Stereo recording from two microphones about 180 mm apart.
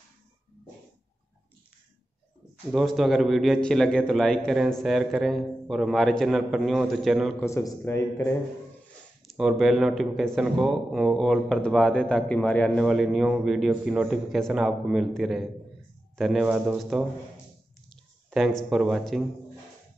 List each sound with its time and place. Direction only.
2.7 s speech: centre (ahead or behind)
7.3 s a man's voice: 15° left (ahead or behind)
9.3 s speech: centre (ahead or behind)
17.8 s a sound: centre (ahead or behind)
18.7 s speech: centre (ahead or behind)